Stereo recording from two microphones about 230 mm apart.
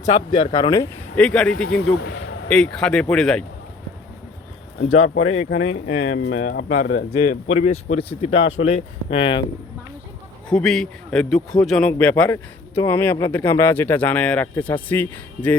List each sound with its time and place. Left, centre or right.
0.0 s a man's voice: left; by 1.8 s centre
2.0 s a man's voice: left
2.5 s speech: centre
4.8 s speech: left
5.0 s speech: left
6.4 s speech: left
10.5 s a man's voice: centre